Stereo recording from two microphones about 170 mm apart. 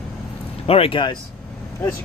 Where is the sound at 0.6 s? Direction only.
35° left (ahead or behind).